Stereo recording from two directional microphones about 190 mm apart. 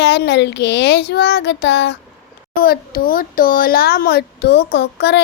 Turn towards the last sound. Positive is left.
turn(degrees=65)  # may be behind; listen again after turning